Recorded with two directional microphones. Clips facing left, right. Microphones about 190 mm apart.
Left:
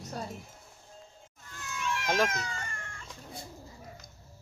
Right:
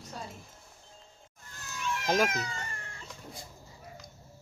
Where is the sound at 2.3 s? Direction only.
35° right (ahead or behind).